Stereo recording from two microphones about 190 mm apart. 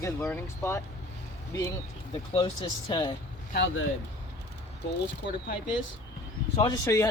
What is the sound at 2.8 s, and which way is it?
Speech, 25° left (ahead or behind).